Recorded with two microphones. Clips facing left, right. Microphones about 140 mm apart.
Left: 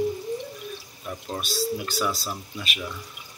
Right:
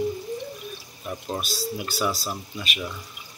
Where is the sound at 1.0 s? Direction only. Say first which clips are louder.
Right 2 dB; 15° right (ahead or behind).